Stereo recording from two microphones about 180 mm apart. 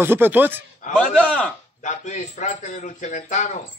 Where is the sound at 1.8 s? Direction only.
40° left (ahead or behind).